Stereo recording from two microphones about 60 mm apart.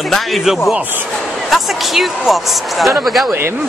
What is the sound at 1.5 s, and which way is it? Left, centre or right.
Speech, centre.